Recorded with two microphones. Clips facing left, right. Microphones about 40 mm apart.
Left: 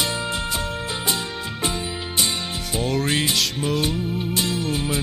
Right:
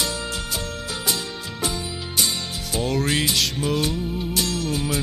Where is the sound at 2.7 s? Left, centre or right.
Centre.